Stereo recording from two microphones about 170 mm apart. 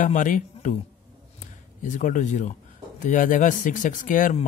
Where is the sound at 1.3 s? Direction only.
50° left (ahead or behind).